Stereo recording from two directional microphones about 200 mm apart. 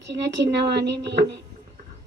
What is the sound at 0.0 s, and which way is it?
A woman's voice, 60° right (ahead or behind).